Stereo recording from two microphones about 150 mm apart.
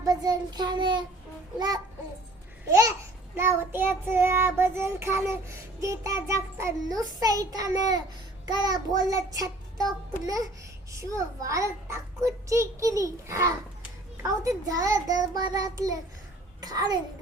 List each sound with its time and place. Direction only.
0.0 s child singing: 25° right (ahead or behind)
16.6 s a child's voice: 25° right (ahead or behind)